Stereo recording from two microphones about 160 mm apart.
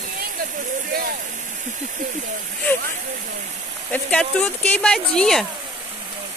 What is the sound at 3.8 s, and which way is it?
Speech, 5° left (ahead or behind).